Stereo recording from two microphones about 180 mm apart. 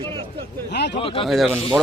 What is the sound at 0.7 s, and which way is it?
Speech, 70° left (ahead or behind).